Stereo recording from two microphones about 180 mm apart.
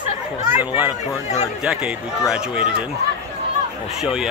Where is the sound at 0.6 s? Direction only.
10° right (ahead or behind).